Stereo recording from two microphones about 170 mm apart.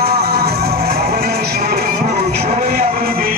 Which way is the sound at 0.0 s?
65° right (ahead or behind).